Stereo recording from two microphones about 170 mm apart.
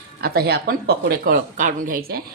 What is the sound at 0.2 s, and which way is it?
Speech, 70° right (ahead or behind).